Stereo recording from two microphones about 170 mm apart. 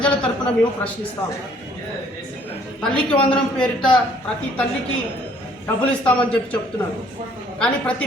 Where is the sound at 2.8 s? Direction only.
5° left (ahead or behind).